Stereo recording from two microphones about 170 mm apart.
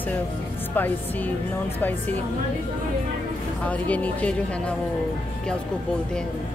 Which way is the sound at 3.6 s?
10° left (ahead or behind).